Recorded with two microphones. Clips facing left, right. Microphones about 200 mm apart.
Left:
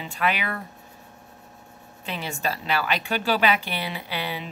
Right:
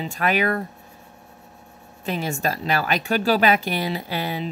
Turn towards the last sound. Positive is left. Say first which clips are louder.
# right 4 dB
turn(degrees=-45)  # may be behind; listen again after turning